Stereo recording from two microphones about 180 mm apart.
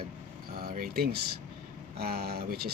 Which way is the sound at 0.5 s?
55° right (ahead or behind).